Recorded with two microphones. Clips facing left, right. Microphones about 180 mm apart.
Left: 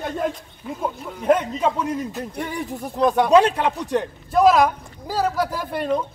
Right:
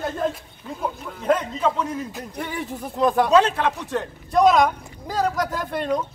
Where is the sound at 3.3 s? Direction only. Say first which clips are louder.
Left 2 dB; 15° left (ahead or behind).